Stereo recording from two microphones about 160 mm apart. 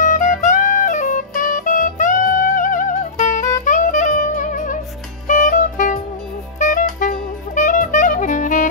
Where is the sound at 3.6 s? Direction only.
50° left (ahead or behind).